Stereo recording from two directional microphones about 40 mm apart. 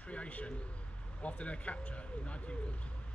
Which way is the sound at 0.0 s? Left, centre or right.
Left.